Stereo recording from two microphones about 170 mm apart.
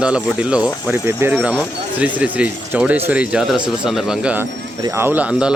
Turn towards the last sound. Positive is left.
turn(degrees=-5)  # may be behind; listen again after turning